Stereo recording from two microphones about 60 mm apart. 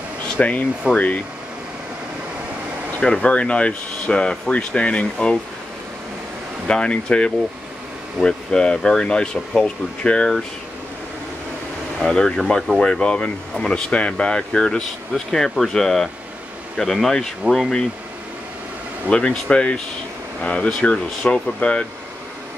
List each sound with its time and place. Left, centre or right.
0.4 s speech: left
3.0 s speech: centre
6.7 s speech: centre
12.0 s speech: centre
19.0 s speech: centre